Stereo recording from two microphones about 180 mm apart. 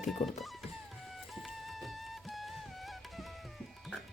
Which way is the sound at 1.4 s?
Centre (ahead or behind).